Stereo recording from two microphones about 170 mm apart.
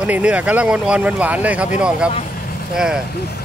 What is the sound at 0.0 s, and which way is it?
Speech, 10° right (ahead or behind).